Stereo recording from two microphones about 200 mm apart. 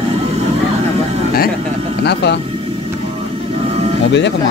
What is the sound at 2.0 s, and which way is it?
Speech, 55° left (ahead or behind).